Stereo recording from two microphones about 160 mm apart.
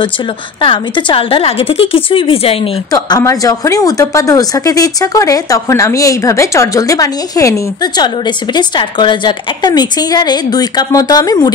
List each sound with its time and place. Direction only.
0.6 s a woman's voice: 30° left (ahead or behind)
2.9 s a woman's voice: 20° left (ahead or behind)